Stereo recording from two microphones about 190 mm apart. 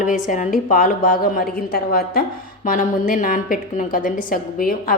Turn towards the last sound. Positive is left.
turn(degrees=50)  # may be behind; listen again after turning